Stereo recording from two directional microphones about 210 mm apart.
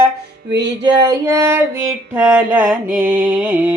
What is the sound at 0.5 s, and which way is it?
Music, 55° right (ahead or behind).